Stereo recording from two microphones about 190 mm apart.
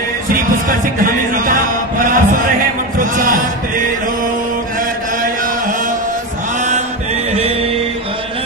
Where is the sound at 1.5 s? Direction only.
45° right (ahead or behind).